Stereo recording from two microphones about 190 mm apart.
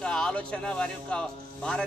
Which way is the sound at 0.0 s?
5° left (ahead or behind).